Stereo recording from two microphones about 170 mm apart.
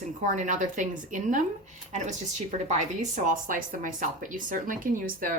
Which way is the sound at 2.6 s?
45° right (ahead or behind).